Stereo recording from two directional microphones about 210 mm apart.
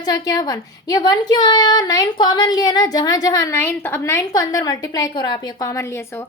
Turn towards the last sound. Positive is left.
turn(degrees=10)  # may be behind; listen again after turning